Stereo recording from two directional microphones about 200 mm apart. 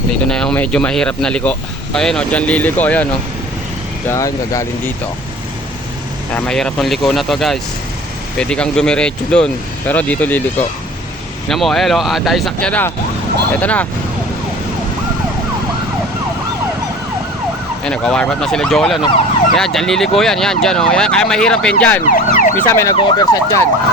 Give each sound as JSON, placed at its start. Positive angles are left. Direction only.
{"t": 0.3, "sound": "speech", "side_deg": 5}
{"t": 4.1, "sound": "speech", "side_deg": 15}
{"t": 6.3, "sound": "speech", "side_deg": 5}
{"t": 11.4, "sound": "speech", "side_deg": 0}
{"t": 17.8, "sound": "speech", "side_deg": 5}
{"t": 22.0, "sound": "ambulance", "side_deg": 40}
{"t": 22.5, "sound": "speech", "side_deg": 10}
{"t": 23.0, "sound": "emergency vehicle", "side_deg": 20}